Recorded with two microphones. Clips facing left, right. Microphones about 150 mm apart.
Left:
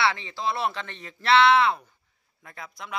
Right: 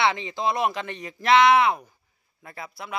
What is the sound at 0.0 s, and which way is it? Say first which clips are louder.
Speech: right 2 dB; 20° right (ahead or behind).